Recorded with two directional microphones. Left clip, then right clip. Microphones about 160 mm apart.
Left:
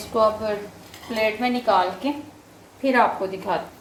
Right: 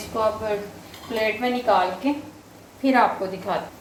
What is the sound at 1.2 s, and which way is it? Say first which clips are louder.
Speech: left 1 dB; 50° left (ahead or behind).